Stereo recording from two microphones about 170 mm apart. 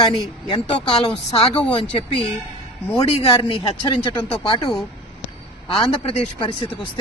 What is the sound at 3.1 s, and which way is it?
Speech, 35° left (ahead or behind).